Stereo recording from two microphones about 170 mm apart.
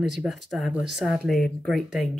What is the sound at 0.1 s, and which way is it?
Speech, centre (ahead or behind).